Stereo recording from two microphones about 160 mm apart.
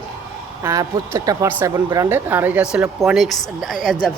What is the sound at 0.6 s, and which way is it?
A woman's voice, 20° right (ahead or behind).